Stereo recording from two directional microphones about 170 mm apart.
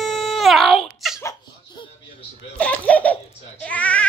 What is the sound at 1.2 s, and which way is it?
Baby laughter, 25° left (ahead or behind).